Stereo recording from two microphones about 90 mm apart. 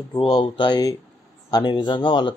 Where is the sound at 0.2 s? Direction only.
60° left (ahead or behind).